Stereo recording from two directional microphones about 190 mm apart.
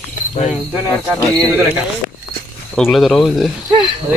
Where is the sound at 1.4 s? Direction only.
15° right (ahead or behind).